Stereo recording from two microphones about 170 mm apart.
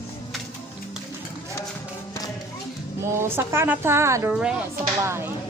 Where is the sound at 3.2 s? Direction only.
15° right (ahead or behind).